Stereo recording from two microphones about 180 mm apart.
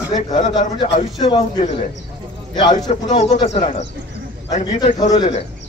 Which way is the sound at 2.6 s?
25° left (ahead or behind).